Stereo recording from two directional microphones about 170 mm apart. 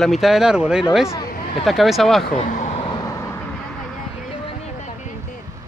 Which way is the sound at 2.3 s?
45° left (ahead or behind).